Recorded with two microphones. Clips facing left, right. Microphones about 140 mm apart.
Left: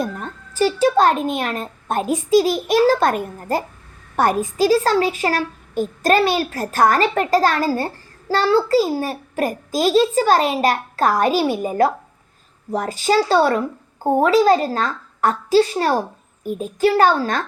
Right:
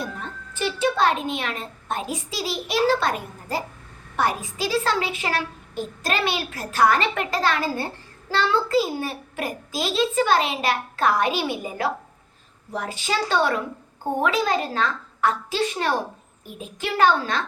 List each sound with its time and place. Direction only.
0.0 s a child's voice: 40° left (ahead or behind)